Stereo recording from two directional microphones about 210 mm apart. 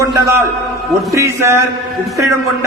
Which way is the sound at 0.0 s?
15° right (ahead or behind).